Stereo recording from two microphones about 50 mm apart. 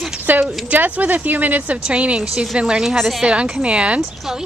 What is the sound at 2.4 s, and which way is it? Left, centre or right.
Speech, centre.